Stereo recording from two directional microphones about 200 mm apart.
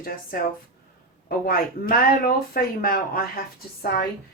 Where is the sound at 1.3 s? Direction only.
45° left (ahead or behind).